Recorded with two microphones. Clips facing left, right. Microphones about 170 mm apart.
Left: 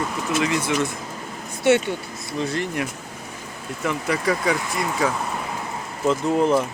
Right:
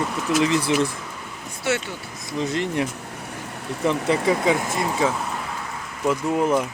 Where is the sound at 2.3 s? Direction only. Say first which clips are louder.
Right 2 dB; 20° right (ahead or behind).